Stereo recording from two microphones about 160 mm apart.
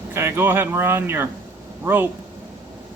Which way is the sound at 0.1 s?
15° right (ahead or behind).